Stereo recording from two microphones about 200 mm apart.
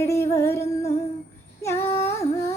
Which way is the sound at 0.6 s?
30° left (ahead or behind).